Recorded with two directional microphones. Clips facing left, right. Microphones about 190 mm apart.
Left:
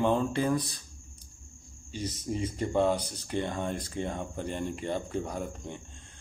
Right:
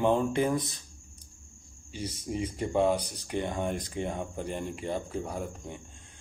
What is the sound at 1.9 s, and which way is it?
Speech, 10° right (ahead or behind).